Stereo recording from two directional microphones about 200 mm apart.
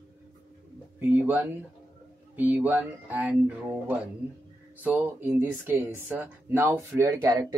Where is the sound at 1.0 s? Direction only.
10° right (ahead or behind).